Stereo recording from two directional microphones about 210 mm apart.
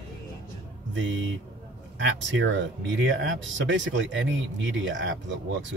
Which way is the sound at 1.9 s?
60° right (ahead or behind).